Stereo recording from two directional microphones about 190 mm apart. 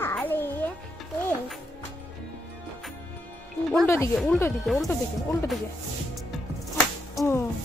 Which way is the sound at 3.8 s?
15° left (ahead or behind).